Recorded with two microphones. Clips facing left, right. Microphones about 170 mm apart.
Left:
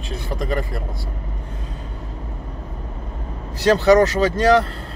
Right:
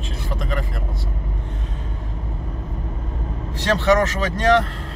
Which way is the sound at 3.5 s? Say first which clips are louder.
Left 4 dB; 35° left (ahead or behind).